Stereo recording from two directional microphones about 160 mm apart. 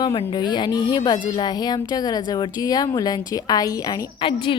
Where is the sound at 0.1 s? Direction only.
40° left (ahead or behind).